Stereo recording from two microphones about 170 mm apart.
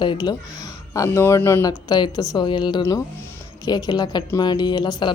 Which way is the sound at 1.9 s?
25° left (ahead or behind).